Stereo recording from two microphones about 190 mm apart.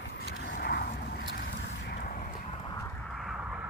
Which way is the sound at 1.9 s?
50° left (ahead or behind).